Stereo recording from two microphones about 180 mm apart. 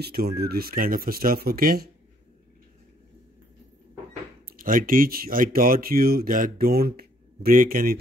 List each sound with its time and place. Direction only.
0.0 s speech: 60° right (ahead or behind)
4.6 s speech: 50° right (ahead or behind)